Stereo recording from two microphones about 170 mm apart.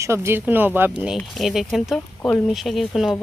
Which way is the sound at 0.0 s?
15° right (ahead or behind).